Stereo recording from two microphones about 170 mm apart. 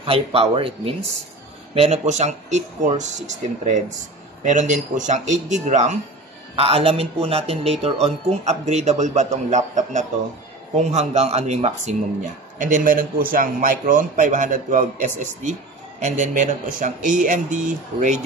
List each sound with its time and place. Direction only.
0.0 s a man's voice: 35° right (ahead or behind)
6.5 s a man's voice: 35° right (ahead or behind)